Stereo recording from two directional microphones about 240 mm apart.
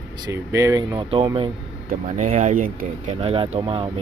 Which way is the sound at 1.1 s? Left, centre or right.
Right.